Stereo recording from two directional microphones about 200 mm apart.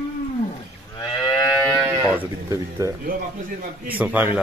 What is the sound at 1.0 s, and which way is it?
Moo, 20° left (ahead or behind).